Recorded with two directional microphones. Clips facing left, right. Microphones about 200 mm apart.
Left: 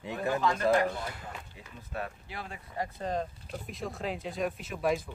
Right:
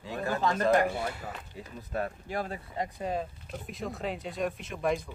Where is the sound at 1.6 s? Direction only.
35° right (ahead or behind).